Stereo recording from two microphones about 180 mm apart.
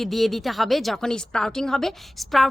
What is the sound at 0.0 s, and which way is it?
A woman's voice, centre (ahead or behind).